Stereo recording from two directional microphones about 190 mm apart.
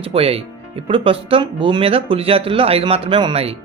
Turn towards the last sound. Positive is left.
turn(degrees=-25)  # may be behind; listen again after turning